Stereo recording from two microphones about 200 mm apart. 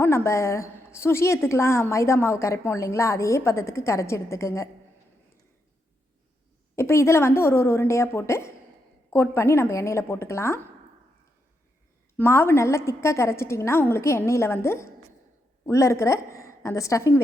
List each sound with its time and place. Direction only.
0.0 s a woman's voice: 15° left (ahead or behind)
6.7 s a woman's voice: 15° left (ahead or behind)
12.1 s a woman's voice: 10° left (ahead or behind)